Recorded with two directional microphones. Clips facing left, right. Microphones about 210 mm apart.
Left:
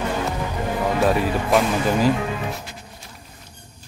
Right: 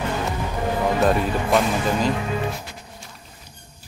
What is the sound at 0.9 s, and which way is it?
Speech, centre (ahead or behind).